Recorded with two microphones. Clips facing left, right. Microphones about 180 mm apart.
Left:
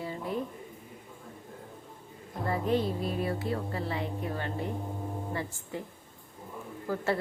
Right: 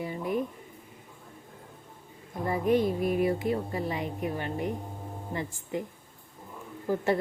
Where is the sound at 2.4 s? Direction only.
15° right (ahead or behind).